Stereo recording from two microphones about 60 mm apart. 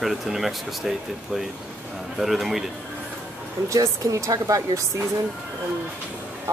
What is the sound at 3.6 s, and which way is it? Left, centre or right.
Speech, right.